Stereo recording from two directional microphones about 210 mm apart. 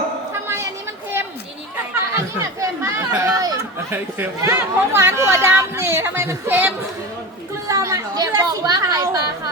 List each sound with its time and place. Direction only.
0.4 s chatter: 10° right (ahead or behind)
2.1 s chatter: 15° right (ahead or behind)
4.4 s speech: 15° right (ahead or behind)